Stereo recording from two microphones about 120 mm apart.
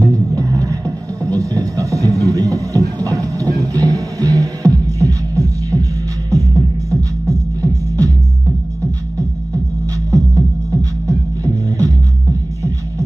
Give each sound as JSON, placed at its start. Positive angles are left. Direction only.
{"t": 0.0, "sound": "music", "side_deg": -30}
{"t": 10.1, "sound": "music", "side_deg": -25}